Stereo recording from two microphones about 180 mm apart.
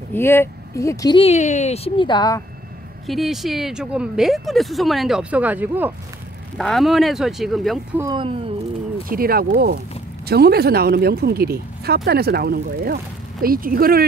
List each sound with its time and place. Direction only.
0.1 s speech: 10° left (ahead or behind); by 1.8 s 40° left (ahead or behind)
2.0 s speech: 25° left (ahead or behind)
3.1 s speech: centre (ahead or behind)
6.6 s speech: centre (ahead or behind)
8.0 s speech: 25° right (ahead or behind)
9.1 s speech: 55° right (ahead or behind)